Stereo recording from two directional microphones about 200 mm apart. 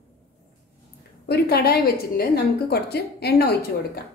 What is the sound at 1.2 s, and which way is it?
A woman's voice, 50° left (ahead or behind).